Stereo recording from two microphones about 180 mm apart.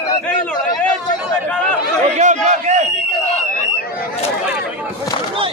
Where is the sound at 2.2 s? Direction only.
40° right (ahead or behind).